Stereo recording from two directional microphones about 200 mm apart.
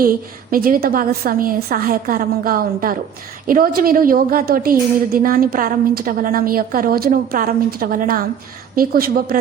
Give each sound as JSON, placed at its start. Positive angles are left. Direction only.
{"t": 0.5, "sound": "a woman's voice", "side_deg": -45}